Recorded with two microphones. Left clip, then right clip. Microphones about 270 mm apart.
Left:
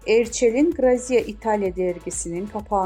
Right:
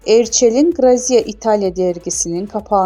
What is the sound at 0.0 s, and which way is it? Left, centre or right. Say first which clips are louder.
Speech: right 7 dB; right.